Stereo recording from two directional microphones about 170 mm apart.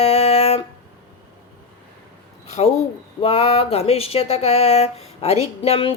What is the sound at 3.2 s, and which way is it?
Speech, 35° left (ahead or behind).